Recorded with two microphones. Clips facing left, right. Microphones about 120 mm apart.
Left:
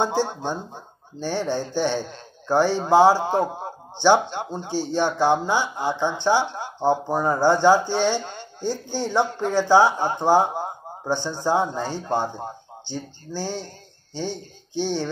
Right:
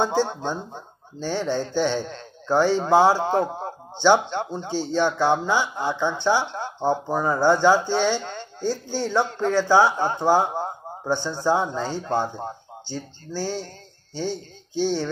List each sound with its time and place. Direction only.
0.0 s speech: 15° left (ahead or behind)